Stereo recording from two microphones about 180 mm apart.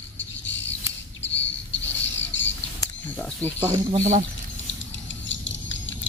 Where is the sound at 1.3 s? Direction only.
90° left.